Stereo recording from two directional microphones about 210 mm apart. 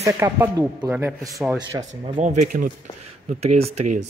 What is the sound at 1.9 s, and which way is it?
Speech, 35° right (ahead or behind).